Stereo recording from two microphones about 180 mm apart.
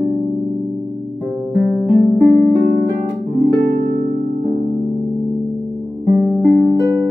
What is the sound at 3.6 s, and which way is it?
Harp, 55° right (ahead or behind).